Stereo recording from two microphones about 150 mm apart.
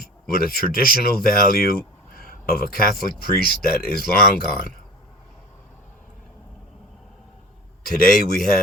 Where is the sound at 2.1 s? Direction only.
75° left (ahead or behind).